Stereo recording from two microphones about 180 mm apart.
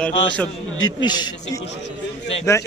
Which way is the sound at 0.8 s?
25° left (ahead or behind).